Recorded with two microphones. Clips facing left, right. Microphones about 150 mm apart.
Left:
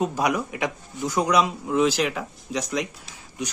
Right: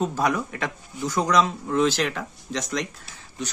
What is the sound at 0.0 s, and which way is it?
Speech, 10° left (ahead or behind).